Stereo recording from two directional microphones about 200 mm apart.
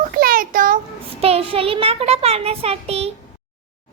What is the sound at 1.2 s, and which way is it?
A child's voice, 30° right (ahead or behind).